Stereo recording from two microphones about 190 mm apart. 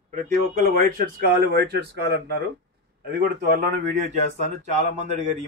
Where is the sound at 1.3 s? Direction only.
55° right (ahead or behind).